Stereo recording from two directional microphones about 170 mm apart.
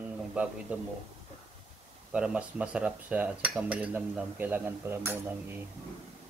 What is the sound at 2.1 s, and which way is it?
Cutlery, 5° right (ahead or behind).